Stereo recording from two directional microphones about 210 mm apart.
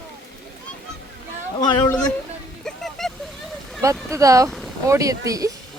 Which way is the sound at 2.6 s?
Centre (ahead or behind).